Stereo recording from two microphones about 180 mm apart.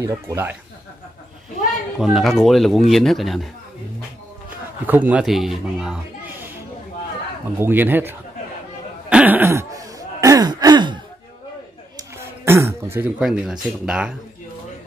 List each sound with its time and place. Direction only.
0.0 s speech: 15° right (ahead or behind)
2.0 s speech: centre (ahead or behind)
4.5 s a man's voice: 10° right (ahead or behind)
7.5 s speech: 10° right (ahead or behind)
9.1 s throat clearing: 10° right (ahead or behind); by 11.0 s 25° right (ahead or behind)
12.0 s throat clearing: 15° right (ahead or behind)
13.2 s speech: 5° right (ahead or behind)